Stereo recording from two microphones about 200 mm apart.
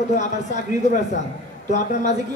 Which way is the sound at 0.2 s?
35° left (ahead or behind).